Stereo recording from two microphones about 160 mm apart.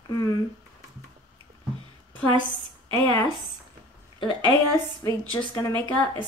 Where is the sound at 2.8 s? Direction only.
30° right (ahead or behind).